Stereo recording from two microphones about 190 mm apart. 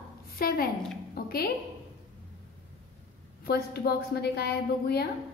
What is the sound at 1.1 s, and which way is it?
Music, 55° left (ahead or behind).